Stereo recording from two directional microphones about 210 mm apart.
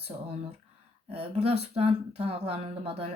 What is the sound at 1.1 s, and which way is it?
Speech, 30° right (ahead or behind).